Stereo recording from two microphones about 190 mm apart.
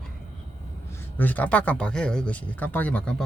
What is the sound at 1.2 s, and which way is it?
Speech, 10° left (ahead or behind).